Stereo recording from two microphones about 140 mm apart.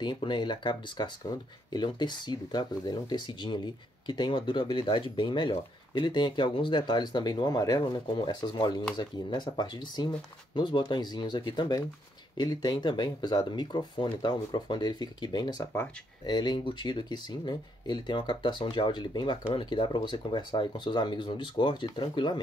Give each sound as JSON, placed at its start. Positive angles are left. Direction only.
{"t": 0.0, "sound": "speech", "side_deg": 35}